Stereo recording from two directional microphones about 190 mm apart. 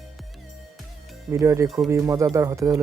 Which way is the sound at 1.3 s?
15° right (ahead or behind).